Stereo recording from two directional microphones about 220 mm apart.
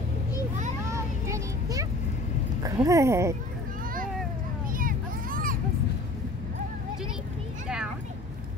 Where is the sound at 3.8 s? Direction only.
40° right (ahead or behind).